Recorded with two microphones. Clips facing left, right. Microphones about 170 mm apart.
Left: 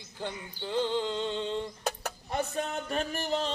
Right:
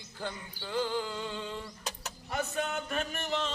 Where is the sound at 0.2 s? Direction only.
20° left (ahead or behind).